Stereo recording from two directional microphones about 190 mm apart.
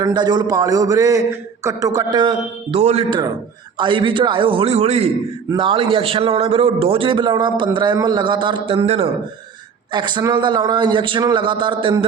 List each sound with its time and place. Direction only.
0.0 s a man's voice: 20° right (ahead or behind)